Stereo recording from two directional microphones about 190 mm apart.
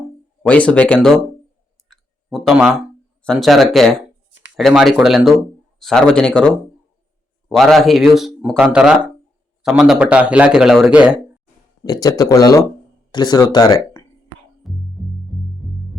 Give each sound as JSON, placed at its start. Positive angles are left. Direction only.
{"t": 0.4, "sound": "speech", "side_deg": 5}
{"t": 1.9, "sound": "clicking", "side_deg": 0}
{"t": 3.2, "sound": "speech", "side_deg": 0}
{"t": 11.8, "sound": "speech", "side_deg": 20}
{"t": 14.6, "sound": "music", "side_deg": 0}